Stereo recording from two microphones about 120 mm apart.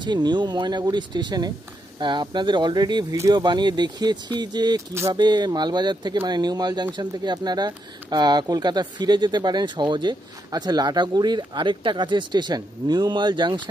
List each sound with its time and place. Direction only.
0.0 s speech: 40° right (ahead or behind)